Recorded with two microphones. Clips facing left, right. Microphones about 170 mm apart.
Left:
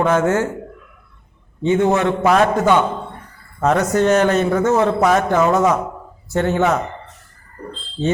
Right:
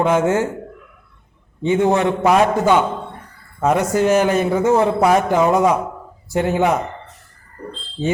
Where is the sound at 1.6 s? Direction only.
20° right (ahead or behind).